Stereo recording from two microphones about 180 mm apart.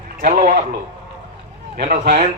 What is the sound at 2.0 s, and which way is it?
Speech, 55° right (ahead or behind).